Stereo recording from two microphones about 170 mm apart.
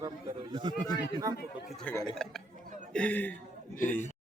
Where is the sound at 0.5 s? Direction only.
30° right (ahead or behind).